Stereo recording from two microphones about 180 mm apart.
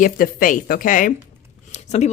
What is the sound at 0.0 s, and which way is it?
A woman's voice, 50° left (ahead or behind).